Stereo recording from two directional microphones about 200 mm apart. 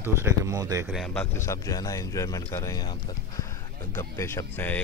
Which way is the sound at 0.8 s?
Centre (ahead or behind).